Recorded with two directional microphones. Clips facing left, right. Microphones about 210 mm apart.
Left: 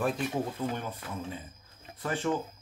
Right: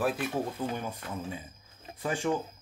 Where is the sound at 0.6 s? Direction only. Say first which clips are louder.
Even; 10° right (ahead or behind).